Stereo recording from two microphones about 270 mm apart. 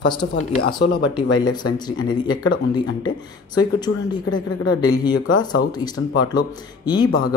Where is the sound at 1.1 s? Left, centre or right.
Centre.